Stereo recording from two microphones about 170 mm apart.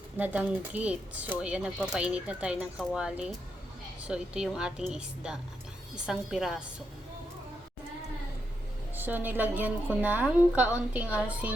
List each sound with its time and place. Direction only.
0.2 s a woman's voice: 10° right (ahead or behind)
9.0 s speech: 10° right (ahead or behind)